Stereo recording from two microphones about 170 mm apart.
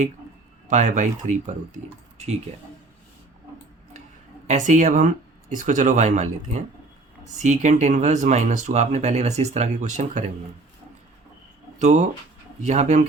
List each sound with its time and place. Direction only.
0.7 s speech: 45° right (ahead or behind)
4.4 s speech: 45° right (ahead or behind)
11.8 s speech: 45° right (ahead or behind)